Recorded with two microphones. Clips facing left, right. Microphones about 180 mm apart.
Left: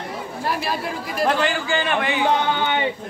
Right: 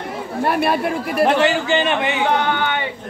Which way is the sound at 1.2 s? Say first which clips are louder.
Right 5 dB; 20° right (ahead or behind).